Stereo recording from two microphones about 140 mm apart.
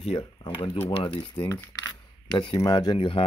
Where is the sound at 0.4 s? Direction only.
35° left (ahead or behind).